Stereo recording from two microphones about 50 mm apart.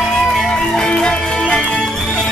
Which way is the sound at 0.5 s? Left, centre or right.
Centre.